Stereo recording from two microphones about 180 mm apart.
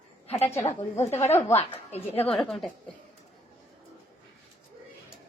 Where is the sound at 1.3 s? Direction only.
15° left (ahead or behind).